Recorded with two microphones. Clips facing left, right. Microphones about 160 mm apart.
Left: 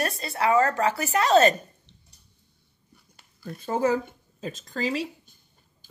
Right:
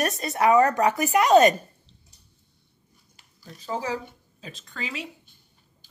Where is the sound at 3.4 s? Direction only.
55° left (ahead or behind).